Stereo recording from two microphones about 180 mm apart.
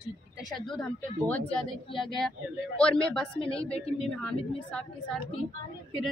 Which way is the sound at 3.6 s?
35° left (ahead or behind).